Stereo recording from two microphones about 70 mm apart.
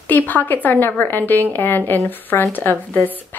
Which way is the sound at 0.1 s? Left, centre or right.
Left.